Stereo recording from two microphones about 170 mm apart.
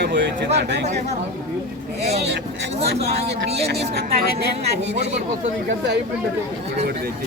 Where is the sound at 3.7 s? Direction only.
70° right (ahead or behind).